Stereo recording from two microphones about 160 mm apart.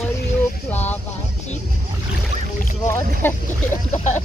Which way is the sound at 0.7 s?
10° left (ahead or behind).